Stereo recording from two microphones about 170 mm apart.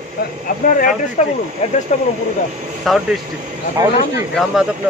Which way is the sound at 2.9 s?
Centre (ahead or behind).